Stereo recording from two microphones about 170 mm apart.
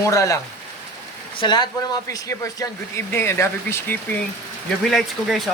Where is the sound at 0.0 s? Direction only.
20° left (ahead or behind).